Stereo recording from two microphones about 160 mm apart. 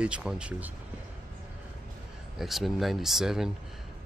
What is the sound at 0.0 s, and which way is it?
Speech, 5° right (ahead or behind).